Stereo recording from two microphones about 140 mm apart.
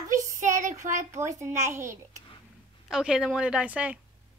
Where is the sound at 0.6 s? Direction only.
60° right (ahead or behind).